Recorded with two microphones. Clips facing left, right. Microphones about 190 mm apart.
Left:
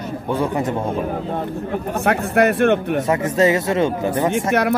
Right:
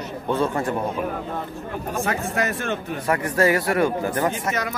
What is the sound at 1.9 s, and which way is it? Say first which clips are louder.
Speech: left 5 dB; 65° left (ahead or behind).